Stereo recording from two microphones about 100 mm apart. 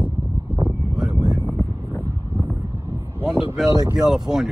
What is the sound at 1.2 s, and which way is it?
Vehicle, 20° left (ahead or behind).